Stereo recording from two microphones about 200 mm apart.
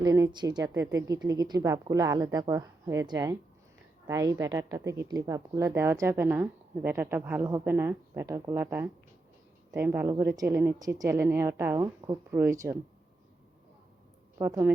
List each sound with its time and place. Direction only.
0.0 s a woman's voice: 15° right (ahead or behind)
14.3 s a woman's voice: 15° right (ahead or behind)